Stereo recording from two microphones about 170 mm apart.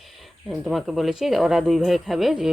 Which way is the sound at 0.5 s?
5° right (ahead or behind).